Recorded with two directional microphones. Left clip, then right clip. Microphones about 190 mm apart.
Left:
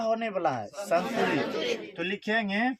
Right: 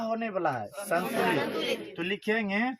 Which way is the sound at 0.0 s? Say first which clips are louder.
Left 2 dB; 30° left (ahead or behind).